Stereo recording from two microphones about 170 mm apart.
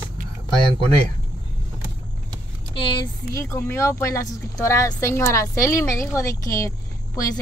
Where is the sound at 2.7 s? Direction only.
30° left (ahead or behind).